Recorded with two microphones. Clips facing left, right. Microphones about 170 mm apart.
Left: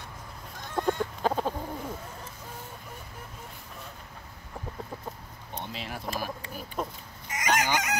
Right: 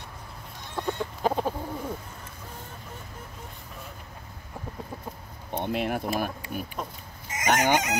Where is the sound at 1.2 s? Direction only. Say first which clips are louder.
Right 2 dB; 10° right (ahead or behind).